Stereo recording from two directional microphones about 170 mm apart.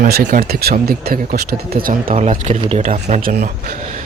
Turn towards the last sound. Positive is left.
turn(degrees=-40)  # may be behind; listen again after turning